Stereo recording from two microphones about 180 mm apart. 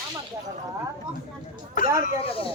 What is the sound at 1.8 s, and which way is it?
Speech, 50° left (ahead or behind).